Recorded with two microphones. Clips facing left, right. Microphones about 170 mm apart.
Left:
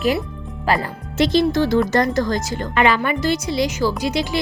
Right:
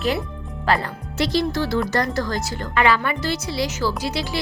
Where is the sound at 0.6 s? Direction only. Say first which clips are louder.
Left 1 dB; 15° left (ahead or behind).